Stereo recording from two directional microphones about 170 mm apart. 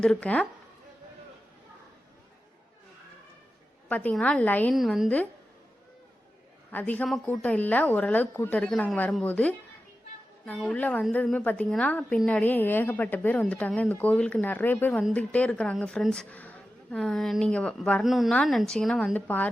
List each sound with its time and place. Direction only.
0.0 s a woman's voice: 5° left (ahead or behind)
3.8 s a woman's voice: 10° left (ahead or behind)
4.7 s speech: centre (ahead or behind)
6.7 s a woman's voice: 10° left (ahead or behind)